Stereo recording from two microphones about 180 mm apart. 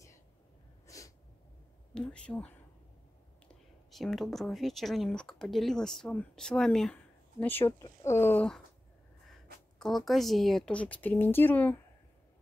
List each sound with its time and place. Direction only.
0.8 s sneeze: 20° left (ahead or behind)
2.0 s a woman's voice: 5° left (ahead or behind)